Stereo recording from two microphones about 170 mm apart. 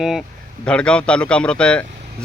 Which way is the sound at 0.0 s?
Centre (ahead or behind).